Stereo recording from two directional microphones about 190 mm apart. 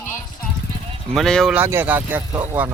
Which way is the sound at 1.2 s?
Centre (ahead or behind).